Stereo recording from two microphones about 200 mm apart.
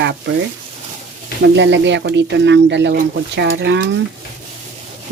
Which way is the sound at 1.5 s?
65° right (ahead or behind).